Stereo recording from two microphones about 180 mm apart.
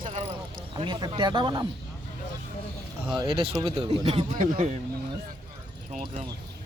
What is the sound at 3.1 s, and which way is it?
Speech, 30° right (ahead or behind).